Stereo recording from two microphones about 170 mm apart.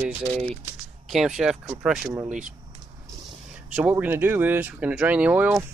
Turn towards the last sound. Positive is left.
turn(degrees=-10)  # may be behind; listen again after turning